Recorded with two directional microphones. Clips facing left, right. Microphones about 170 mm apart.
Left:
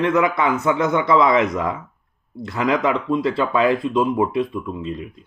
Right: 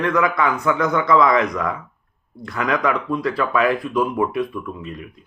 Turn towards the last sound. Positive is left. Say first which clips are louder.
# left 3 dB
turn(degrees=25)  # may be behind; listen again after turning